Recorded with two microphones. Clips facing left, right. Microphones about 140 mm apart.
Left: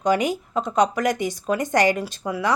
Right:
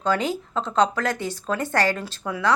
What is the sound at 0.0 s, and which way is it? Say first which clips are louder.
A woman's voice: left 3 dB; 15° left (ahead or behind).